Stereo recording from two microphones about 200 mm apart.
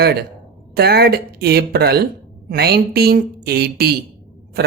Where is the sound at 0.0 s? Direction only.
50° right (ahead or behind).